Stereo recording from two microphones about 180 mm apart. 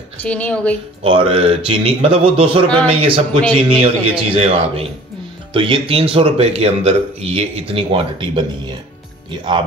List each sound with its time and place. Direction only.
0.2 s a woman's voice: 5° left (ahead or behind)
1.0 s speech: 30° right (ahead or behind)